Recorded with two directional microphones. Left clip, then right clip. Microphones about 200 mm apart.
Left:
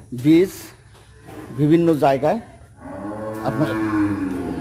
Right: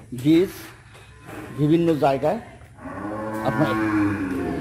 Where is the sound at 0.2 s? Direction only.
15° left (ahead or behind).